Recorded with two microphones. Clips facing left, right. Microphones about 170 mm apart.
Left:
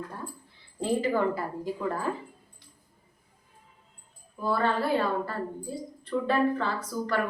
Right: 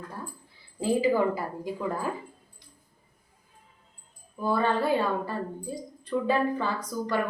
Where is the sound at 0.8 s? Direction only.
5° right (ahead or behind).